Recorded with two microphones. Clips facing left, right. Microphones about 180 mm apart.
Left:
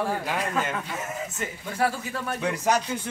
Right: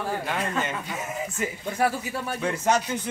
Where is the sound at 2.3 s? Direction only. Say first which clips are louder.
Even; centre (ahead or behind).